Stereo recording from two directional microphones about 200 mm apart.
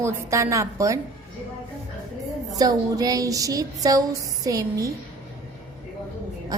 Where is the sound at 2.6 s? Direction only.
20° right (ahead or behind).